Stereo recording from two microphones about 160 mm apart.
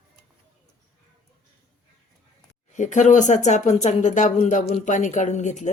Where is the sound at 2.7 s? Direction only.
50° left (ahead or behind).